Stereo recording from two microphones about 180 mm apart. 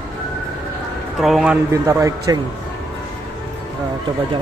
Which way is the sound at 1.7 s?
15° right (ahead or behind).